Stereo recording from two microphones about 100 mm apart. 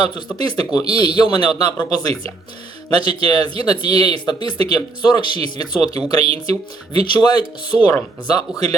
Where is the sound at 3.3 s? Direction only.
45° left (ahead or behind).